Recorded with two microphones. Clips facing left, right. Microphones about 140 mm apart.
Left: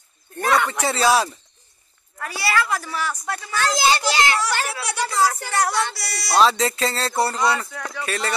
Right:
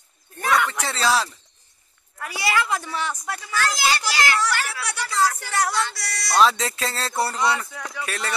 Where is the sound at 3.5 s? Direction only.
25° left (ahead or behind).